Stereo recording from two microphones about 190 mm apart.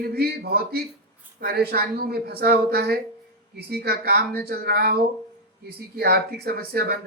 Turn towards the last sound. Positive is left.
turn(degrees=-55)  # may be behind; listen again after turning